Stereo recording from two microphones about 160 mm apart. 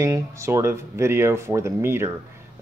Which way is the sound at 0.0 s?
20° right (ahead or behind).